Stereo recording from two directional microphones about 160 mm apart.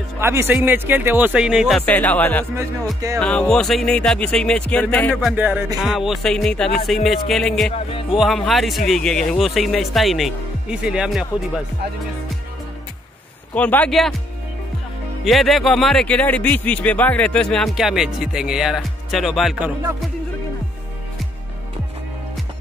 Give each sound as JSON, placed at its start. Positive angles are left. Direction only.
{"t": 0.2, "sound": "speech", "side_deg": -15}
{"t": 1.8, "sound": "speech", "side_deg": 10}
{"t": 2.5, "sound": "speech", "side_deg": -20}
{"t": 3.2, "sound": "speech", "side_deg": 5}
{"t": 5.1, "sound": "speech", "side_deg": -10}
{"t": 7.7, "sound": "speech", "side_deg": 35}
{"t": 8.2, "sound": "speech", "side_deg": 0}
{"t": 13.6, "sound": "speech", "side_deg": 10}
{"t": 15.2, "sound": "speech", "side_deg": 0}